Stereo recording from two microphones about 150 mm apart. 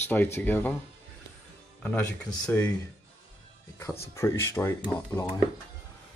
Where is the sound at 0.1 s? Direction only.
10° left (ahead or behind).